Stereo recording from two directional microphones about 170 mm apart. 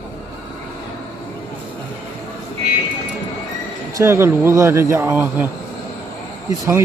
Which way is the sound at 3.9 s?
15° right (ahead or behind).